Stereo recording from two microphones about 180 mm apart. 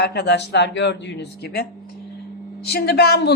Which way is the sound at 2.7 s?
60° left (ahead or behind).